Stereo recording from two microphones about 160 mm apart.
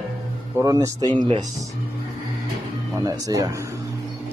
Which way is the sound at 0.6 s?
20° right (ahead or behind).